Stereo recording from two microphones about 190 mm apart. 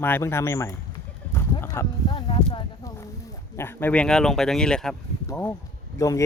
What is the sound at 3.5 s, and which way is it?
Speech, 10° left (ahead or behind).